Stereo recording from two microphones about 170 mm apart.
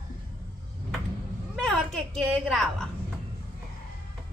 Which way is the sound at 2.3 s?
Centre (ahead or behind).